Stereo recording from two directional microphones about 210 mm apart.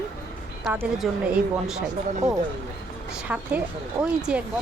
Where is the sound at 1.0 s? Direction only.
5° right (ahead or behind).